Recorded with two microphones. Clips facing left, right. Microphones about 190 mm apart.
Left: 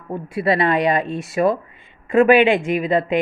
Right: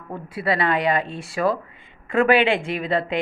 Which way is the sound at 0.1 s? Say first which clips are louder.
Left 5 dB; 20° left (ahead or behind).